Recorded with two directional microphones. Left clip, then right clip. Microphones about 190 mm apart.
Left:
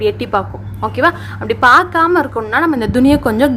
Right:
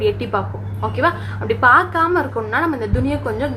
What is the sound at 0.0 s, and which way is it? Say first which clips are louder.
A woman's voice: left 4 dB; 45° left (ahead or behind).